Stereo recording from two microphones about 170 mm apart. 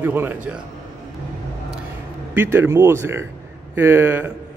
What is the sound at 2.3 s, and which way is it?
Speech, 10° right (ahead or behind).